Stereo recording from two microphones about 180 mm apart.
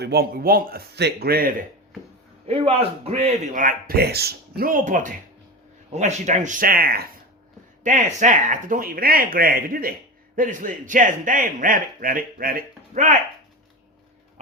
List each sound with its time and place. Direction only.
0.0 s speech: 60° right (ahead or behind)
2.5 s a man's voice: 35° right (ahead or behind); by 7.1 s 55° right (ahead or behind)
7.9 s a man's voice: 45° right (ahead or behind)